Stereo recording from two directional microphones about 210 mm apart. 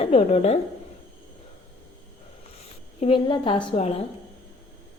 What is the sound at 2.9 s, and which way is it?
Speech, 25° left (ahead or behind).